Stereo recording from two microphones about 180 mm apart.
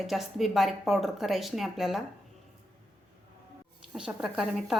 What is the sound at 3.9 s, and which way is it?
Speech, 5° right (ahead or behind).